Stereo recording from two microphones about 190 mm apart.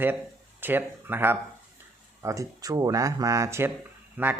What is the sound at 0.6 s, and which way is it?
Speech, 10° right (ahead or behind).